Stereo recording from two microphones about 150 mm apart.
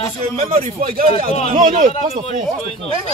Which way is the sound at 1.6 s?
60° right (ahead or behind).